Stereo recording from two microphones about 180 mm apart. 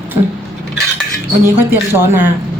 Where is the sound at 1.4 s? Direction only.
15° right (ahead or behind).